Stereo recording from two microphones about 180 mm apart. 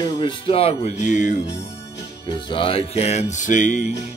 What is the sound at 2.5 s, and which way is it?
Music, 30° left (ahead or behind).